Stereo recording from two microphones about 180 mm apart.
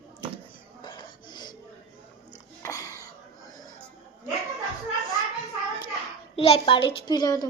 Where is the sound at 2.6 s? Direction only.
20° left (ahead or behind).